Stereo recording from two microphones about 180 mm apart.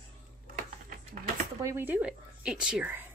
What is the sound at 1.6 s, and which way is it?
Speech, 10° right (ahead or behind).